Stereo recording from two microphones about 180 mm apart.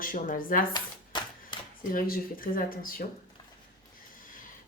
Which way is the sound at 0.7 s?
25° left (ahead or behind).